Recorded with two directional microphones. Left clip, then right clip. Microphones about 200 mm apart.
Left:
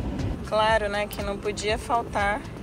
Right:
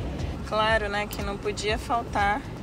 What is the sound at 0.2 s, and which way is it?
Speech, 5° right (ahead or behind).